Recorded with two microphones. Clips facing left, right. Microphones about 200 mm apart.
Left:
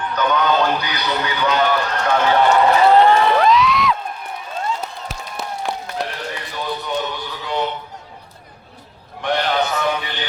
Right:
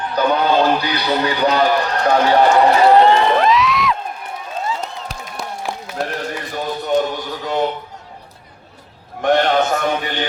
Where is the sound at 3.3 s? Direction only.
Centre (ahead or behind).